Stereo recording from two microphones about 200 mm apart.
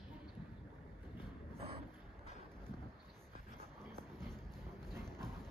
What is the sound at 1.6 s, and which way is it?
Vehicle, 30° right (ahead or behind).